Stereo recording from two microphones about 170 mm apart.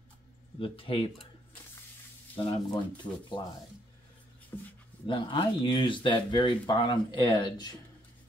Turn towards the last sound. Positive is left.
turn(degrees=25)  # may be behind; listen again after turning